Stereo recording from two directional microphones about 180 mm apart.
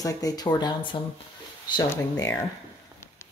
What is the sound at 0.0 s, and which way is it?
Speech, 20° left (ahead or behind).